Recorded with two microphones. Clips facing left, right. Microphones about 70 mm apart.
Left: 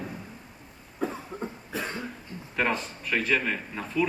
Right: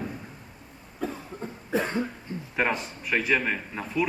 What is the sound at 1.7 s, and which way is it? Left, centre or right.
Cough, right.